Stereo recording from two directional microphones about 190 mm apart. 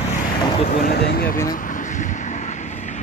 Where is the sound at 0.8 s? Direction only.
55° left (ahead or behind).